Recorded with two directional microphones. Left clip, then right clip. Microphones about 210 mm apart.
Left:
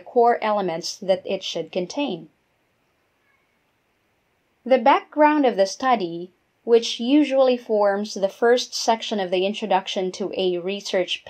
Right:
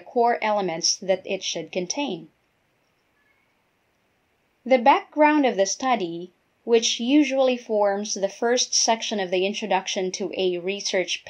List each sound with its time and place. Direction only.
0.1 s speech: 15° left (ahead or behind)
4.6 s speech: 20° left (ahead or behind)